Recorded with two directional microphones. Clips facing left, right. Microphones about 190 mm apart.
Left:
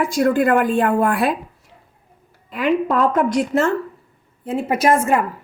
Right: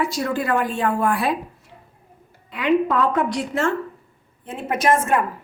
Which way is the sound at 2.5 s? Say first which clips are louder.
Left 1 dB; 45° left (ahead or behind).